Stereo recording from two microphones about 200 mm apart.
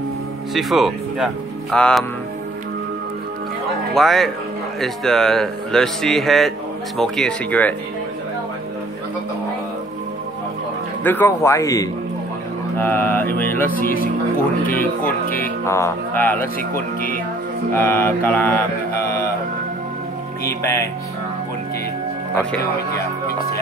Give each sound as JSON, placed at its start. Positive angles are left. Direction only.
{"t": 0.6, "sound": "speech", "side_deg": 0}
{"t": 3.9, "sound": "speech", "side_deg": 0}
{"t": 11.1, "sound": "mantra", "side_deg": 10}
{"t": 13.7, "sound": "speech", "side_deg": 45}
{"t": 15.2, "sound": "speech", "side_deg": 45}
{"t": 15.6, "sound": "mantra", "side_deg": 15}
{"t": 20.6, "sound": "mantra", "side_deg": 15}
{"t": 22.3, "sound": "mantra", "side_deg": 10}